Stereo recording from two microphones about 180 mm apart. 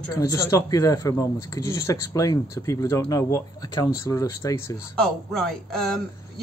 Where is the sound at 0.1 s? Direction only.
20° left (ahead or behind).